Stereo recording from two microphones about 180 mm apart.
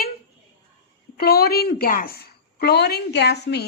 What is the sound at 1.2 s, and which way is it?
A woman's voice, 60° left (ahead or behind).